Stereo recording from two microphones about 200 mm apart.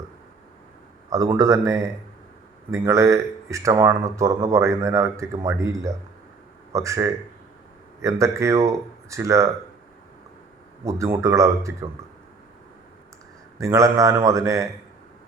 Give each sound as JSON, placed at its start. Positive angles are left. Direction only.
{"t": 1.1, "sound": "speech", "side_deg": -15}
{"t": 10.8, "sound": "speech", "side_deg": -15}
{"t": 13.6, "sound": "speech", "side_deg": -15}